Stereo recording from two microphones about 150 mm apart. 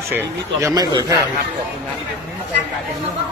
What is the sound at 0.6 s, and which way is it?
Speech, 25° right (ahead or behind).